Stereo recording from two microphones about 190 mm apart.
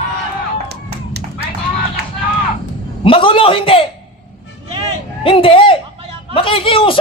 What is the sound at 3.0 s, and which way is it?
Speech, 30° left (ahead or behind).